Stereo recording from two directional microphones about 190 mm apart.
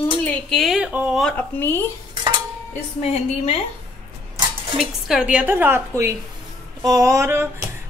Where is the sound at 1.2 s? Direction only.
10° left (ahead or behind).